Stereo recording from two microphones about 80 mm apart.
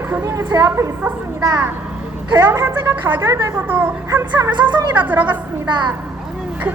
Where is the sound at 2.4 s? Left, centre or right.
Right.